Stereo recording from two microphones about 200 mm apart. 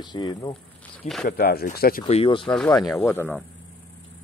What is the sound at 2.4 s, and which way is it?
Speech, 5° left (ahead or behind).